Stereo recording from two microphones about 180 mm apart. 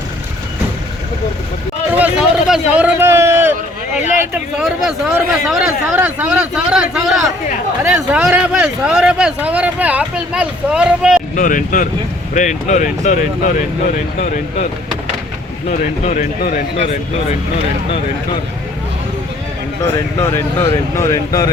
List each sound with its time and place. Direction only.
1.9 s a sound: 5° right (ahead or behind)
4.5 s speech: centre (ahead or behind)
11.3 s speech: 45° left (ahead or behind)
15.7 s speech: 40° left (ahead or behind)
16.7 s speech: 35° left (ahead or behind)
20.1 s speech: 15° left (ahead or behind)